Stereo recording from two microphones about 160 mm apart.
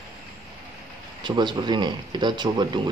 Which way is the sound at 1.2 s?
30° right (ahead or behind).